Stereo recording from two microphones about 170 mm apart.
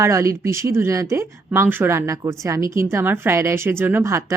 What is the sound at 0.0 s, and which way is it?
Speech, 15° right (ahead or behind).